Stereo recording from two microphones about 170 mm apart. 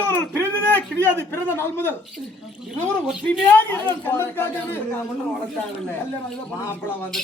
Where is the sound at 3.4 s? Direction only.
10° left (ahead or behind).